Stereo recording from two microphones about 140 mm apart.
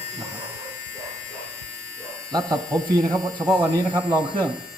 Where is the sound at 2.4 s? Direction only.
5° left (ahead or behind).